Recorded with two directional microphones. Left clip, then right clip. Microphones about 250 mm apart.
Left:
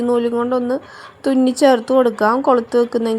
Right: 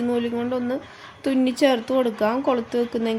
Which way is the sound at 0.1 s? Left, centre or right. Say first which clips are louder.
Left 10 dB; centre.